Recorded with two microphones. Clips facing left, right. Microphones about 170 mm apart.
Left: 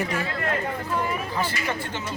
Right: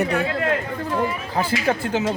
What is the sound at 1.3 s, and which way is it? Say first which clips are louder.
Speech: right 6 dB; 90° right.